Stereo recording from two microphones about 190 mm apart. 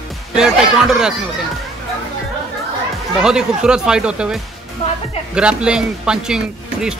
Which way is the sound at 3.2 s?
5° right (ahead or behind).